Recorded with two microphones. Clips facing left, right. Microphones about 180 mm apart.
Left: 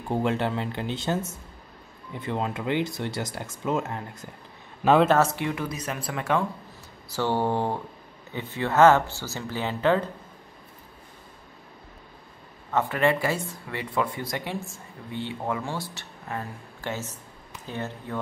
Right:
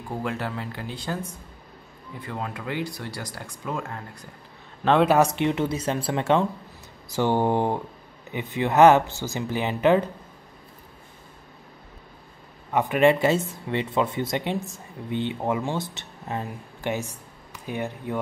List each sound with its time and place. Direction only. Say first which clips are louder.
0.1 s speech: left 5 dB; 25° left (ahead or behind)
5.0 s speech: right 2 dB; 15° right (ahead or behind)
12.7 s speech: right 4 dB; 15° right (ahead or behind)